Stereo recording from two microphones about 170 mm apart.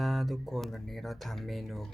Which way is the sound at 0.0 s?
Centre (ahead or behind).